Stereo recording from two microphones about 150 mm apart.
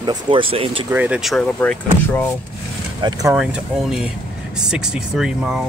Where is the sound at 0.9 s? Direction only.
10° right (ahead or behind).